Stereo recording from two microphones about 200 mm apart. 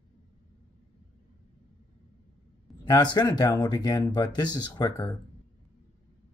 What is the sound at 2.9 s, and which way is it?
Speech, 20° left (ahead or behind).